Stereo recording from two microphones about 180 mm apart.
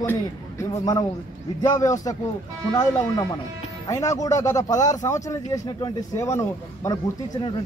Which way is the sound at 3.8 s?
20° left (ahead or behind).